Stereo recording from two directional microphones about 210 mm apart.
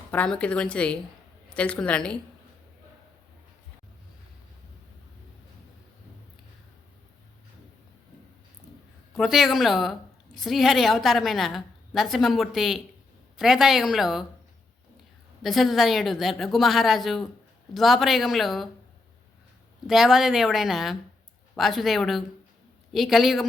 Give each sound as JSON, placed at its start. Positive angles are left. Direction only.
{"t": 0.1, "sound": "a woman's voice", "side_deg": 5}
{"t": 9.1, "sound": "a woman's voice", "side_deg": 0}
{"t": 15.4, "sound": "a woman's voice", "side_deg": 0}
{"t": 19.9, "sound": "a woman's voice", "side_deg": 0}